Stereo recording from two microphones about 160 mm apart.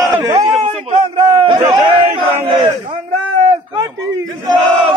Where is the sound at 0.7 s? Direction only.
35° right (ahead or behind).